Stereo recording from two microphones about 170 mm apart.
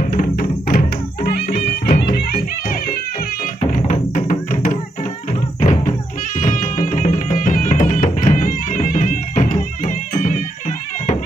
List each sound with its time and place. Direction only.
0.1 s music: 55° left (ahead or behind)
3.7 s music: 45° left (ahead or behind)